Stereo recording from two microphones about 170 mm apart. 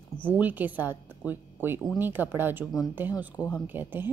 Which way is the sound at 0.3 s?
10° right (ahead or behind).